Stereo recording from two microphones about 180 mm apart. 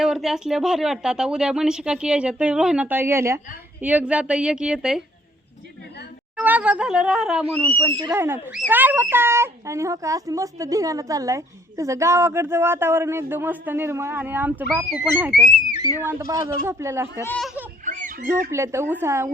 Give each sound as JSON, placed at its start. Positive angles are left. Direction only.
{"t": 0.0, "sound": "speech", "side_deg": 0}
{"t": 6.3, "sound": "speech", "side_deg": -5}
{"t": 8.1, "sound": "speech", "side_deg": -10}
{"t": 17.2, "sound": "speech", "side_deg": 5}
{"t": 17.8, "sound": "children playing", "side_deg": -45}
{"t": 18.5, "sound": "speech", "side_deg": -15}